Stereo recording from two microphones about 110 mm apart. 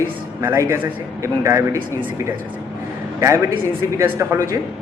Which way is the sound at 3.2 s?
25° right (ahead or behind).